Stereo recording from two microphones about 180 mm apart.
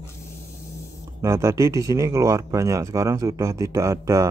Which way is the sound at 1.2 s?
15° right (ahead or behind).